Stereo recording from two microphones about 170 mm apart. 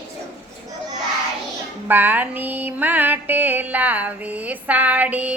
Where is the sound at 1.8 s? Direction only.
10° right (ahead or behind).